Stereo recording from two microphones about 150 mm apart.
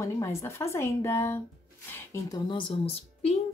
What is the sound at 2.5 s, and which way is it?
Speech, 35° left (ahead or behind).